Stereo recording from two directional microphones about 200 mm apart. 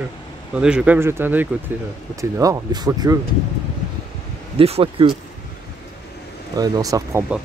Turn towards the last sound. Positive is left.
turn(degrees=-15)  # may be behind; listen again after turning